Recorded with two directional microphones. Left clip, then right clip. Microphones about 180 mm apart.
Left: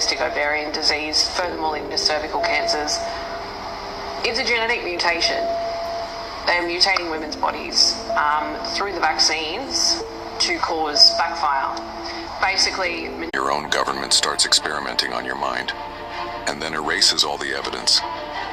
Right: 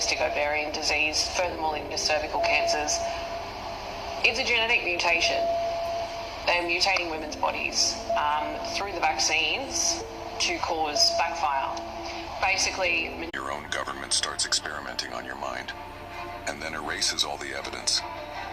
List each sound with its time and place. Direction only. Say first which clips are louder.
0.2 s a woman's voice: left 5 dB; 15° left (ahead or behind)
4.3 s a woman's voice: left 3 dB; 15° left (ahead or behind)
13.3 s speech: left 15 dB; 35° left (ahead or behind)